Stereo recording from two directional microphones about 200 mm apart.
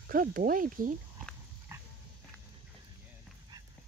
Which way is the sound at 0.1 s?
45° right (ahead or behind).